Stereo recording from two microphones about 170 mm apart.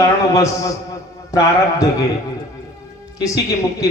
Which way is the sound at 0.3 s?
20° left (ahead or behind).